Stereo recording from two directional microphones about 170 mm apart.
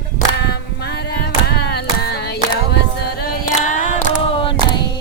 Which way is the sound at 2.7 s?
70° left (ahead or behind).